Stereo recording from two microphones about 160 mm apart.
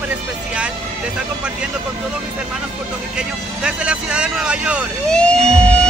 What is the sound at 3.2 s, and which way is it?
Speech, 5° right (ahead or behind).